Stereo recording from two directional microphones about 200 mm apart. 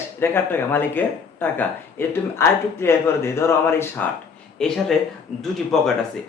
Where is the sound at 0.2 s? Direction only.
10° left (ahead or behind).